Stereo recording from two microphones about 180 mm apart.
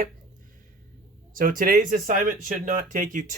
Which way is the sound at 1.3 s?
50° right (ahead or behind).